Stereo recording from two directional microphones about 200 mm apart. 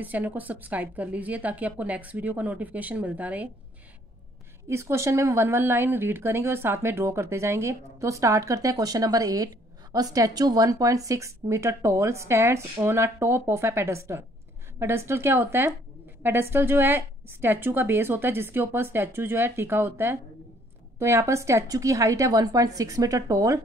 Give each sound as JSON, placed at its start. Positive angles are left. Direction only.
{"t": 0.0, "sound": "a woman's voice", "side_deg": -10}
{"t": 4.6, "sound": "a woman's voice", "side_deg": -15}